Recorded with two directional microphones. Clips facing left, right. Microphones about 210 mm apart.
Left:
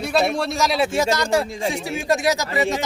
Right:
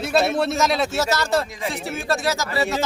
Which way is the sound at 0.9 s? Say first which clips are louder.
Left 2 dB; 15° left (ahead or behind).